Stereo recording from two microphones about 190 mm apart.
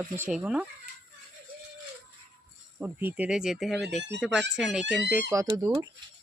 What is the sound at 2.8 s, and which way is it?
Speech, 10° right (ahead or behind).